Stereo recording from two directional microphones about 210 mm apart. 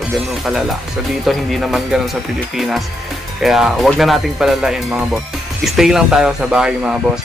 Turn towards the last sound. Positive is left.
turn(degrees=-5)  # may be behind; listen again after turning